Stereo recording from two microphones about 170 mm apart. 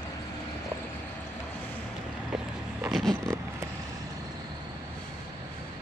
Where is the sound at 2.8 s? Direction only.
Centre (ahead or behind).